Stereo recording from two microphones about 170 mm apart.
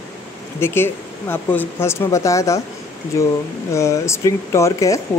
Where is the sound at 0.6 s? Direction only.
15° left (ahead or behind).